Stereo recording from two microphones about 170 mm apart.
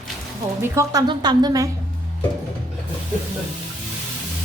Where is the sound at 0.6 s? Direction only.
15° right (ahead or behind).